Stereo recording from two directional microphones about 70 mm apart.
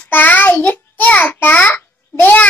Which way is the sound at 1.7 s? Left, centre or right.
Left.